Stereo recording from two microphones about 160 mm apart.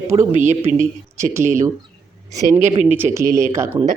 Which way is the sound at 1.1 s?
15° right (ahead or behind).